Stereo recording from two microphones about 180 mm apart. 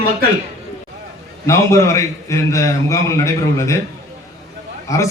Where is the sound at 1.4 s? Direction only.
15° left (ahead or behind).